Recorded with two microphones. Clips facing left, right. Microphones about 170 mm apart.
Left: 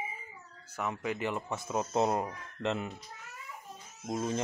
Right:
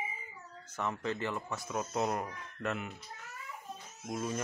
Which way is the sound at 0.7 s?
10° left (ahead or behind).